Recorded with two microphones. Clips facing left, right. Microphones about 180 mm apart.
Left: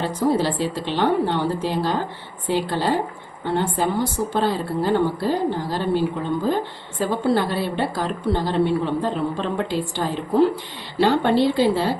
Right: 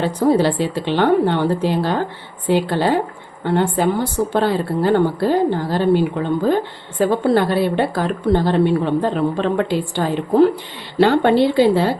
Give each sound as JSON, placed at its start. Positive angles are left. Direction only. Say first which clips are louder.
{"t": 0.0, "sound": "a woman's voice", "louder": "right 5 dB", "side_deg": -60}